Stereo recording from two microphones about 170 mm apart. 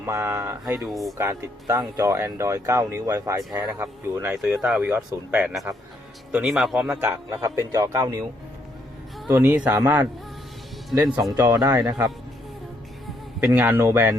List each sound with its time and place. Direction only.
0.0 s speech: 15° right (ahead or behind)
0.9 s a man's voice: centre (ahead or behind)
1.2 s a man's voice: 15° right (ahead or behind)
6.9 s speech: 15° right (ahead or behind)
9.2 s speech: 10° right (ahead or behind)
13.4 s speech: 10° right (ahead or behind)